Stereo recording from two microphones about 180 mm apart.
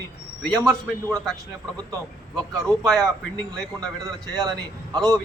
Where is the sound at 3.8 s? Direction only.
20° right (ahead or behind).